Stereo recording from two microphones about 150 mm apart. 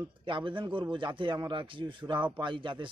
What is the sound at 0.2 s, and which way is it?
A man's voice, 35° right (ahead or behind).